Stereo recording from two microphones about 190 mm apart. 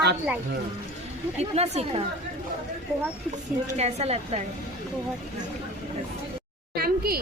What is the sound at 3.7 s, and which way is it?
Speech, 35° right (ahead or behind).